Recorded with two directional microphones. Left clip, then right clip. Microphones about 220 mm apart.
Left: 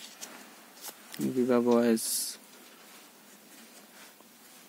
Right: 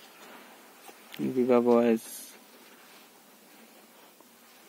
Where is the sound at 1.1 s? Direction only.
15° left (ahead or behind).